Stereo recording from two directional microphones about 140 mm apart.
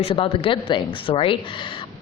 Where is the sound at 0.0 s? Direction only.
40° left (ahead or behind).